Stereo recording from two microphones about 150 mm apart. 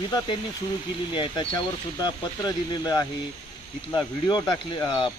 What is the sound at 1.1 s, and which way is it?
Speech, 30° left (ahead or behind).